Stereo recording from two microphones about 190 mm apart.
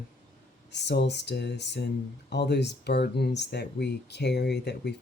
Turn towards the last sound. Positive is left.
turn(degrees=60)  # may be behind; listen again after turning